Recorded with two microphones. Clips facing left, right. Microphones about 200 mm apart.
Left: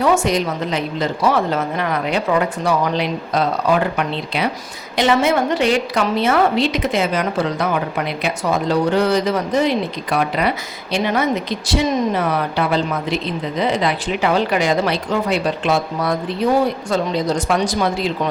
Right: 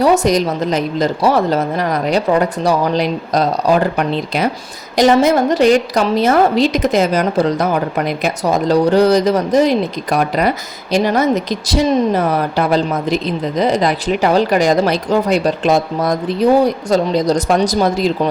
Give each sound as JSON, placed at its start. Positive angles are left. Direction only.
{"t": 0.0, "sound": "a woman's voice", "side_deg": -40}